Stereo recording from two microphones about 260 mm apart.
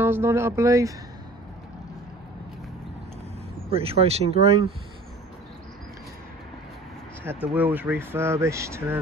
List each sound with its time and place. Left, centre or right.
0.0 s speech: centre
3.7 s speech: right
7.5 s speech: centre